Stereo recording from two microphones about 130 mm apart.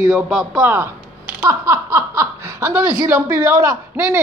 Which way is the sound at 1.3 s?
25° right (ahead or behind).